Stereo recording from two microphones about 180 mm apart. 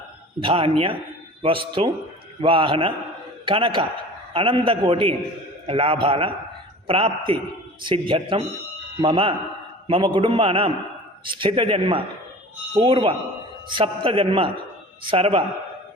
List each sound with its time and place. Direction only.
0.3 s a man's voice: 30° right (ahead or behind)